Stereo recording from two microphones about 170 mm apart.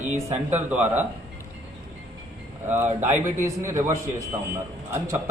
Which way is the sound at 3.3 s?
15° right (ahead or behind).